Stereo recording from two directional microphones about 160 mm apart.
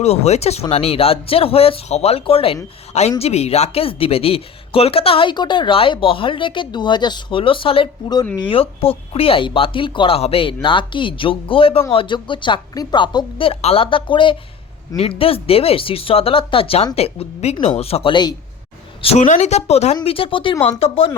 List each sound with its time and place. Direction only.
0.0 s speech: 40° left (ahead or behind)
19.0 s speech: 45° left (ahead or behind)